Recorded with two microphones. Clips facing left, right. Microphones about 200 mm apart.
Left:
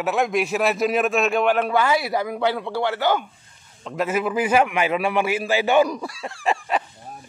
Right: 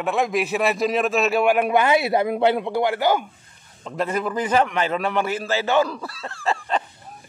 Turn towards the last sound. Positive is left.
turn(degrees=15)  # may be behind; listen again after turning